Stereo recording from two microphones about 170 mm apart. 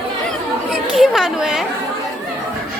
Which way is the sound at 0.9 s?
Centre (ahead or behind).